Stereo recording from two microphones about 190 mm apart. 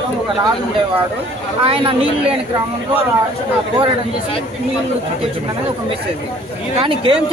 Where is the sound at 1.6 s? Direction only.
30° right (ahead or behind).